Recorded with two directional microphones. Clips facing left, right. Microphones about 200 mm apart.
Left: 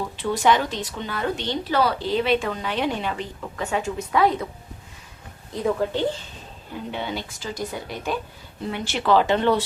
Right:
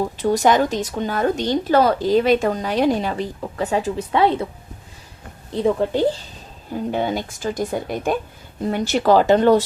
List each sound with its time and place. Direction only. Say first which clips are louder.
0.0 s speech: right 5 dB; 40° right (ahead or behind)
5.5 s a woman's voice: right 4 dB; 30° right (ahead or behind)